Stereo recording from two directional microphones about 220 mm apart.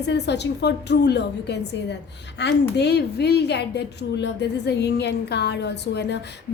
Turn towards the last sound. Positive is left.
turn(degrees=50)  # may be behind; listen again after turning